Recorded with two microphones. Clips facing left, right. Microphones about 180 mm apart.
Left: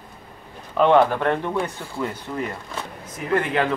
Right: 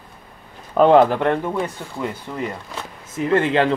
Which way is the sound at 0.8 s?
40° right (ahead or behind).